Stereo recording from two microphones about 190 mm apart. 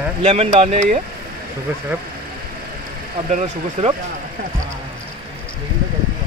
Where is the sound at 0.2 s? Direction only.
35° right (ahead or behind).